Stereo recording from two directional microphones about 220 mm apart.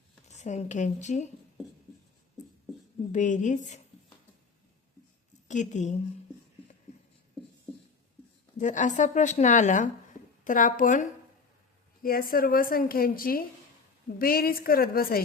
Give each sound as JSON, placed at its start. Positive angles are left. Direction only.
{"t": 0.3, "sound": "a woman's voice", "side_deg": 30}
{"t": 3.1, "sound": "a woman's voice", "side_deg": 35}
{"t": 5.5, "sound": "a woman's voice", "side_deg": 35}
{"t": 8.5, "sound": "a woman's voice", "side_deg": 35}
{"t": 12.0, "sound": "a woman's voice", "side_deg": 40}